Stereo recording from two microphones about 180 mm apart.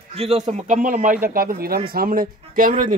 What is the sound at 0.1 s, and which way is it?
A man's voice, 35° right (ahead or behind).